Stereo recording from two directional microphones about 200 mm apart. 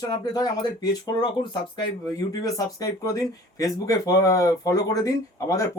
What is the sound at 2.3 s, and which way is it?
Speech, 20° left (ahead or behind).